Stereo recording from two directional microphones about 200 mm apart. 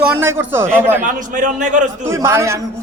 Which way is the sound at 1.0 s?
40° right (ahead or behind).